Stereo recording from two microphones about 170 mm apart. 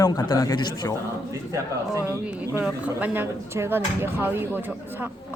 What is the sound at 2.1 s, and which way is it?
Speech, 10° right (ahead or behind).